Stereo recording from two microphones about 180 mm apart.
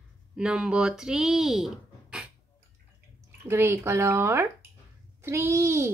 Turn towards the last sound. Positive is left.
turn(degrees=-15)  # may be behind; listen again after turning